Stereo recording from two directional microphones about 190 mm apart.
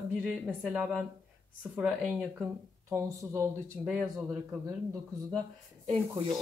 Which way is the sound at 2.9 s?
15° right (ahead or behind).